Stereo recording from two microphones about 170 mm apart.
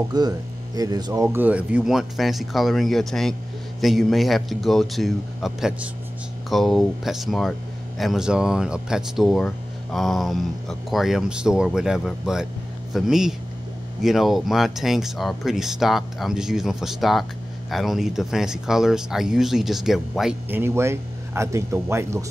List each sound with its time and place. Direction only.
0.1 s speech: 25° right (ahead or behind); by 20.3 s centre (ahead or behind)
20.4 s speech: 15° right (ahead or behind)